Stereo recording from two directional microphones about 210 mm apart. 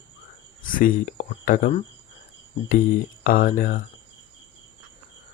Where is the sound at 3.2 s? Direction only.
40° left (ahead or behind).